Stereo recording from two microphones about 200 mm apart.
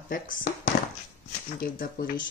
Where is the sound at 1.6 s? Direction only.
45° left (ahead or behind).